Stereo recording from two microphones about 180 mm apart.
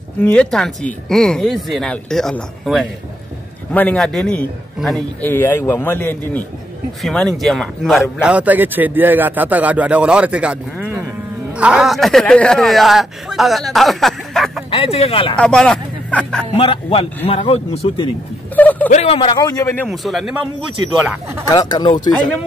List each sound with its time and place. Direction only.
0.2 s a man's voice: 5° left (ahead or behind)
14.7 s speech: 30° left (ahead or behind)
15.3 s speech: 5° left (ahead or behind)
16.5 s speech: 30° left (ahead or behind)
18.6 s a man's voice: 10° left (ahead or behind)
18.9 s a man's voice: 35° left (ahead or behind); by 19.9 s 15° left (ahead or behind)
19.9 s speech: centre (ahead or behind)
21.5 s a man's voice: 20° left (ahead or behind)